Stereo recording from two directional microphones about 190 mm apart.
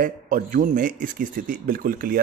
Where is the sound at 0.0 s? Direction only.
45° right (ahead or behind).